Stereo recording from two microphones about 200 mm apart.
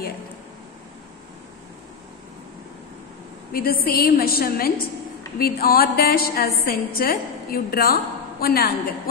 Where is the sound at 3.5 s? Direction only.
45° left (ahead or behind).